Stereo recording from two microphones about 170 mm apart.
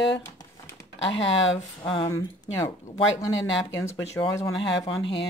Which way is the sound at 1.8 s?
25° left (ahead or behind).